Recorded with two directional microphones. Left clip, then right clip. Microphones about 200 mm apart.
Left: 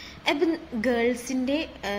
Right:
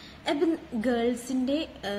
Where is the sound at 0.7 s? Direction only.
20° right (ahead or behind).